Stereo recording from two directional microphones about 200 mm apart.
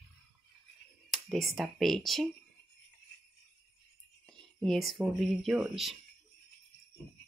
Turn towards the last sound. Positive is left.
turn(degrees=0)  # may be behind; listen again after turning